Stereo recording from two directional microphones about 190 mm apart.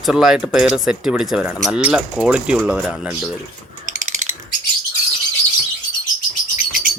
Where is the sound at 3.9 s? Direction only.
40° right (ahead or behind).